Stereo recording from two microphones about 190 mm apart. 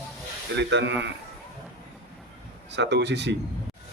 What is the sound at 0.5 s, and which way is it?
Speech, 65° right (ahead or behind).